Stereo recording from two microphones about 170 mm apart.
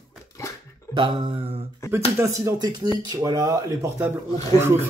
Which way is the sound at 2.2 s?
20° right (ahead or behind).